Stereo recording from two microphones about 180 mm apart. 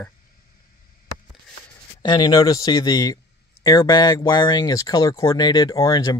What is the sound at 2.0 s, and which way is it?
Speech, 20° left (ahead or behind).